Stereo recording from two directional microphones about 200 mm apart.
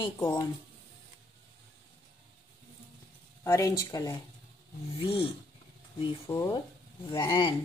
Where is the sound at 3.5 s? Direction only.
15° left (ahead or behind).